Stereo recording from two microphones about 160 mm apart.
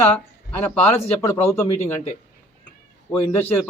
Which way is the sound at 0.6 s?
10° left (ahead or behind).